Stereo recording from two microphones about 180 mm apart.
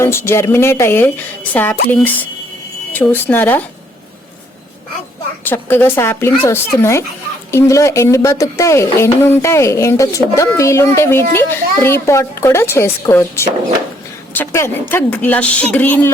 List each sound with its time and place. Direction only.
0.0 s speech: 15° left (ahead or behind)
5.5 s speech: 10° left (ahead or behind)